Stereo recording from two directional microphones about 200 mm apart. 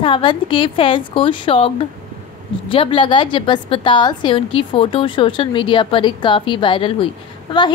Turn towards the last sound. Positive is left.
turn(degrees=25)  # may be behind; listen again after turning